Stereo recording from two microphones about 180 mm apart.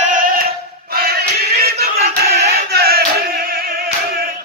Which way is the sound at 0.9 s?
60° right (ahead or behind).